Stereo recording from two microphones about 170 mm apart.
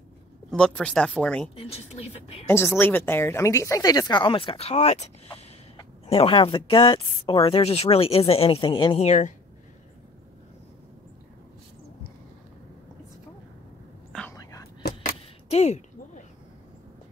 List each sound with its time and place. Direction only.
0.5 s speech: centre (ahead or behind)
1.5 s speech: 35° left (ahead or behind)
2.4 s a woman's voice: 15° left (ahead or behind)
9.0 s speech: 45° left (ahead or behind)
14.3 s whispering: 20° left (ahead or behind)
14.8 s vehicle: 65° left (ahead or behind)
15.5 s a sound: 40° left (ahead or behind)